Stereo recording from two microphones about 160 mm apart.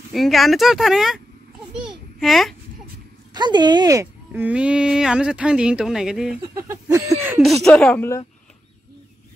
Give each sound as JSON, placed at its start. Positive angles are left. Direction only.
{"t": 0.1, "sound": "speech", "side_deg": 0}
{"t": 1.8, "sound": "babbling", "side_deg": -5}
{"t": 3.3, "sound": "speech", "side_deg": -25}
{"t": 4.3, "sound": "speech", "side_deg": -10}
{"t": 6.4, "sound": "a sound", "side_deg": -20}
{"t": 7.4, "sound": "a woman's voice", "side_deg": 0}